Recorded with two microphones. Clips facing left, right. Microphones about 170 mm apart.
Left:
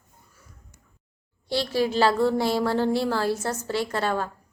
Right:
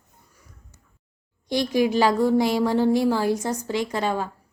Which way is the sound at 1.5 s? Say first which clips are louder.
Right 3 dB; 15° right (ahead or behind).